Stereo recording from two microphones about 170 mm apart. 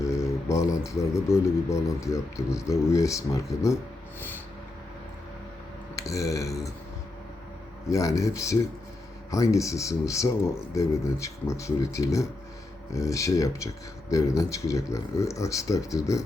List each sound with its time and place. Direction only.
0.0 s mantra: 20° left (ahead or behind)
0.9 s speech: 20° left (ahead or behind)
6.0 s speech: 20° left (ahead or behind)
7.9 s speech: 20° left (ahead or behind)
9.3 s speech: 20° left (ahead or behind)